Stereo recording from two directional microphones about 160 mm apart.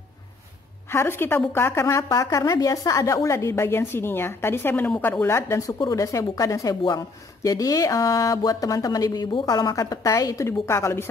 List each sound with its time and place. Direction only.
0.8 s a woman's voice: 15° left (ahead or behind)